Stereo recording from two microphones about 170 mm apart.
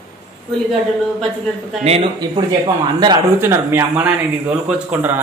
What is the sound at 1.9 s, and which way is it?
Speech, 30° right (ahead or behind).